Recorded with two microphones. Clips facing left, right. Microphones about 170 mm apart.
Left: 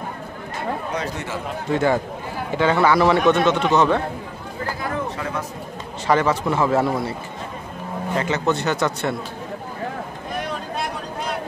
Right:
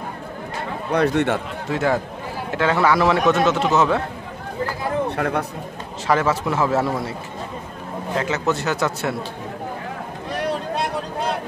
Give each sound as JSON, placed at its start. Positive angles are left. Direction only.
{"t": 0.9, "sound": "speech", "side_deg": -60}
{"t": 1.7, "sound": "a man's voice", "side_deg": 0}
{"t": 5.1, "sound": "speech", "side_deg": -60}
{"t": 6.0, "sound": "a man's voice", "side_deg": 0}